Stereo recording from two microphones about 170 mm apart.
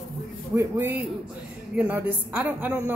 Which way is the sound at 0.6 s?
15° right (ahead or behind).